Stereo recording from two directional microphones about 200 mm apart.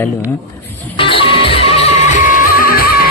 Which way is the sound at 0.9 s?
25° left (ahead or behind).